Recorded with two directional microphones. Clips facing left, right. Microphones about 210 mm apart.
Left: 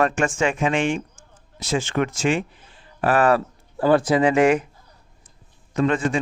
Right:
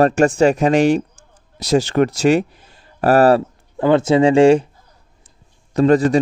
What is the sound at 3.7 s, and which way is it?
Speech, 20° right (ahead or behind).